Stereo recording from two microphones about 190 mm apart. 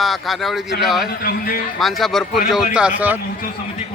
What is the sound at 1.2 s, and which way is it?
Speech, 50° left (ahead or behind).